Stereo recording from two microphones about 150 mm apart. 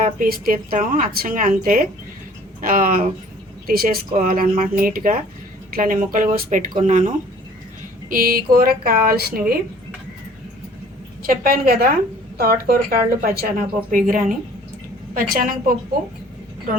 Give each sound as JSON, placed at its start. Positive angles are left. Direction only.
{"t": 0.0, "sound": "speech", "side_deg": -70}
{"t": 3.7, "sound": "speech", "side_deg": -80}
{"t": 4.2, "sound": "speech", "side_deg": -65}
{"t": 8.1, "sound": "speech", "side_deg": -70}
{"t": 11.2, "sound": "a woman's voice", "side_deg": -80}
{"t": 12.4, "sound": "speech", "side_deg": -80}